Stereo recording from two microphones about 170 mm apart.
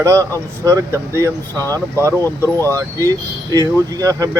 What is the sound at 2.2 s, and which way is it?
Speech, 15° left (ahead or behind).